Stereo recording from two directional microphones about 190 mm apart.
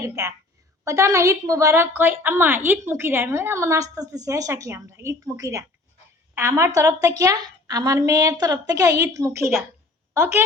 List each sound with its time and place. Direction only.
0.0 s a woman's voice: 15° right (ahead or behind)